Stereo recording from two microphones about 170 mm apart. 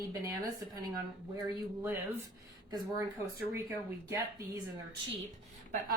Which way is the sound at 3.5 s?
15° right (ahead or behind).